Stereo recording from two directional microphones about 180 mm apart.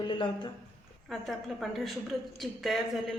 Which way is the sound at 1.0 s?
Centre (ahead or behind).